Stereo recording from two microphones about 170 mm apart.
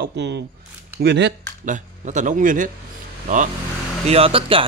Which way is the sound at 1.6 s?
45° right (ahead or behind).